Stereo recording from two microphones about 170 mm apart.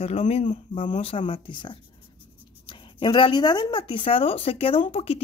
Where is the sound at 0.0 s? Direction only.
35° left (ahead or behind).